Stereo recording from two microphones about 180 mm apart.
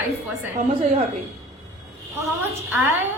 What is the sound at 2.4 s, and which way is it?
Speech, 10° right (ahead or behind).